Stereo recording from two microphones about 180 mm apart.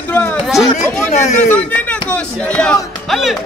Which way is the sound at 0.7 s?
40° left (ahead or behind).